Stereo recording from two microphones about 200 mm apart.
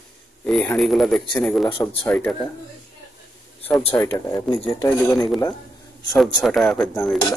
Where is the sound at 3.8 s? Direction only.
25° left (ahead or behind).